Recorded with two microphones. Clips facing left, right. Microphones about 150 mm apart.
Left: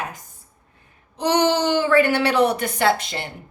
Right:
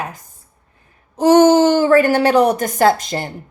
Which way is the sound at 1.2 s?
45° right (ahead or behind).